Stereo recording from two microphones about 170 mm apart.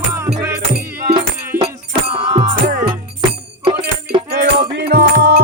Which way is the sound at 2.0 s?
40° right (ahead or behind).